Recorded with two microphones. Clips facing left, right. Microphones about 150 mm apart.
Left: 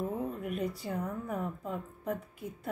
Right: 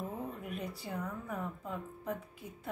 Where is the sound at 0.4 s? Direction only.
40° left (ahead or behind).